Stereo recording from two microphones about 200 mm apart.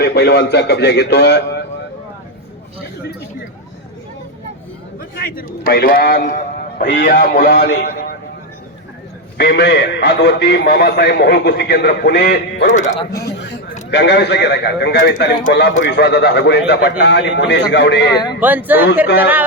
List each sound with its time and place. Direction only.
0.0 s a man's voice: 55° left (ahead or behind)
4.9 s a man's voice: 50° left (ahead or behind)
7.5 s a man's voice: 60° left (ahead or behind)
9.4 s a man's voice: 55° left (ahead or behind)
12.6 s a man's voice: 40° left (ahead or behind)
13.3 s a sound: 60° left (ahead or behind)
13.9 s a man's voice: 60° left (ahead or behind)
18.3 s speech: 10° right (ahead or behind)